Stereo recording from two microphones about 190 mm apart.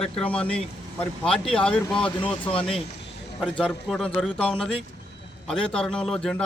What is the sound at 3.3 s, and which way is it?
Speech, 5° left (ahead or behind).